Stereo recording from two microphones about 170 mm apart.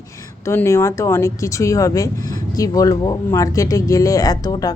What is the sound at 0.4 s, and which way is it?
A woman's voice, 15° left (ahead or behind).